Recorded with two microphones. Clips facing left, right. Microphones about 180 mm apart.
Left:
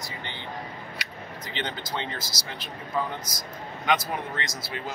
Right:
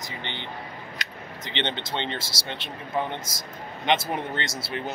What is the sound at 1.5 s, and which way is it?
Speech, 25° right (ahead or behind).